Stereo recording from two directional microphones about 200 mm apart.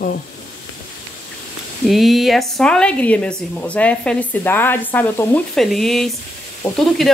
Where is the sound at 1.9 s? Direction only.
Centre (ahead or behind).